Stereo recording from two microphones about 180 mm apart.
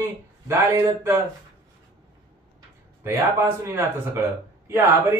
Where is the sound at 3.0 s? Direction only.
10° right (ahead or behind).